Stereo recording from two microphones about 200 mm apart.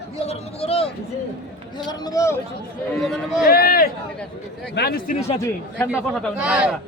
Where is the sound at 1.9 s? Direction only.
20° left (ahead or behind).